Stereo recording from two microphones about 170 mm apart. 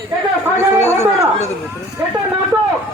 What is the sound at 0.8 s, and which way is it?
Speech, 15° left (ahead or behind).